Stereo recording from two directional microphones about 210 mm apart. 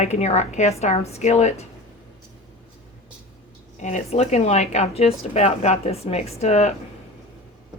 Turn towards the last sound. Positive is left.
turn(degrees=30)  # may be behind; listen again after turning